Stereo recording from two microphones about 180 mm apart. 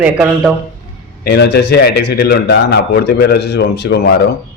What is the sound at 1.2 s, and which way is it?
A man's voice, 65° left (ahead or behind).